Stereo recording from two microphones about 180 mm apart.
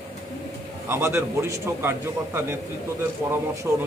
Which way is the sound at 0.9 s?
15° right (ahead or behind).